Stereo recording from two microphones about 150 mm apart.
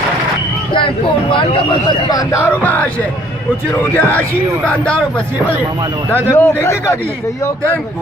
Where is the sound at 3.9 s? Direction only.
15° left (ahead or behind).